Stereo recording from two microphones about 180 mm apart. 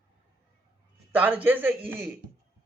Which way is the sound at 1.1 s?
10° right (ahead or behind).